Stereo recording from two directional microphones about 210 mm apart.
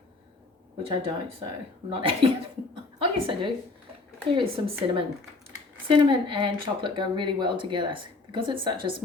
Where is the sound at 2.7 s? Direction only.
25° right (ahead or behind).